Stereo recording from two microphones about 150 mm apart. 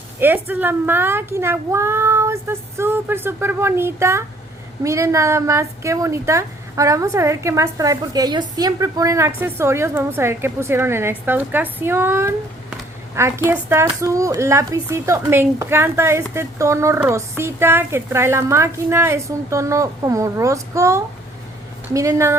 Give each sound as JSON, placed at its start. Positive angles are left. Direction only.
{"t": 0.2, "sound": "a child's voice", "side_deg": -15}